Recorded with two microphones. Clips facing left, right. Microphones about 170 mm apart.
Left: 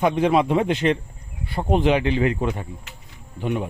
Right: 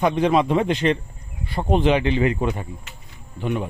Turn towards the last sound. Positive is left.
turn(degrees=15)  # may be behind; listen again after turning